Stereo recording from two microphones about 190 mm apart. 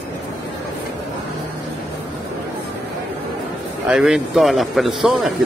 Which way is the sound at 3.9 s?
Centre (ahead or behind).